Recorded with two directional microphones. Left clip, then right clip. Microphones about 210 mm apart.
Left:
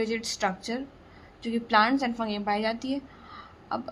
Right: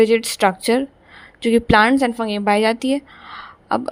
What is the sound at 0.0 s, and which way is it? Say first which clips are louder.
A woman's voice: right 14 dB; 45° right (ahead or behind).